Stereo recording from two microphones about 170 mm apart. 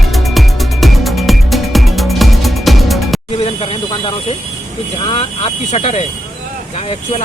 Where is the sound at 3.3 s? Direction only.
35° left (ahead or behind).